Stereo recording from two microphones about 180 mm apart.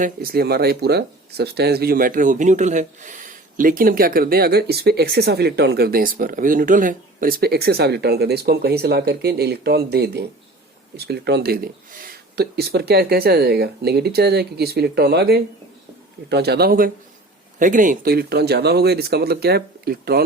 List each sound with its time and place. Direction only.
0.0 s speech: 55° right (ahead or behind)